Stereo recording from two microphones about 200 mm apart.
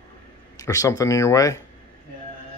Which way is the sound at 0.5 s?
15° left (ahead or behind).